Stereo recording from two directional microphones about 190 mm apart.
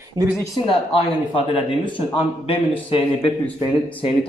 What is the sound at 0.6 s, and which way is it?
Speech, 30° left (ahead or behind).